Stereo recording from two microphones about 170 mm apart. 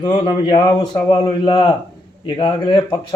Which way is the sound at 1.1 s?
25° left (ahead or behind).